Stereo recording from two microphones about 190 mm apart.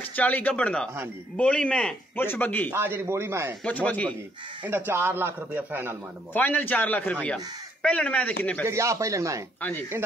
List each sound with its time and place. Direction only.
0.1 s a man's voice: 10° left (ahead or behind)
2.7 s a man's voice: 15° right (ahead or behind)
3.6 s a man's voice: 10° left (ahead or behind)
4.6 s a man's voice: 10° right (ahead or behind)
6.3 s a man's voice: 10° left (ahead or behind)
8.6 s a man's voice: 15° right (ahead or behind)
9.6 s a man's voice: 10° left (ahead or behind)